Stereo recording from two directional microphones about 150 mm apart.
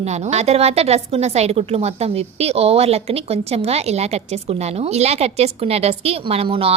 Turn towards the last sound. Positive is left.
turn(degrees=-40)  # may be behind; listen again after turning